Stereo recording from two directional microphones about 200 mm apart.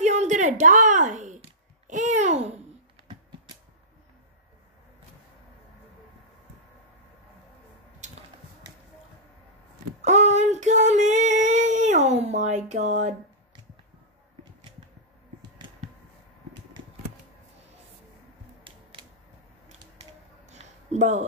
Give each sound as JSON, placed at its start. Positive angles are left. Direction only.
{"t": 0.0, "sound": "speech", "side_deg": -35}
{"t": 1.9, "sound": "babbling", "side_deg": -35}
{"t": 10.0, "sound": "child singing", "side_deg": -35}
{"t": 20.4, "sound": "a sound", "side_deg": -35}